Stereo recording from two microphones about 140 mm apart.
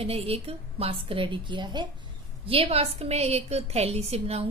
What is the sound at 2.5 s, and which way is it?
A woman's voice, 45° right (ahead or behind).